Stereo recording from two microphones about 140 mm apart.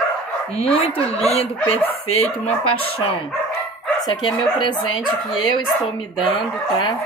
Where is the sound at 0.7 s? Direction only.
45° left (ahead or behind).